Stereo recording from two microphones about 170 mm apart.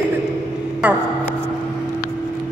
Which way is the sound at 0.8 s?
10° right (ahead or behind).